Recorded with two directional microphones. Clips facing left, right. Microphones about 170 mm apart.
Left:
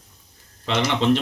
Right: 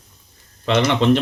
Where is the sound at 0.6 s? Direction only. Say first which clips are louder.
Right 5 dB; 60° right (ahead or behind).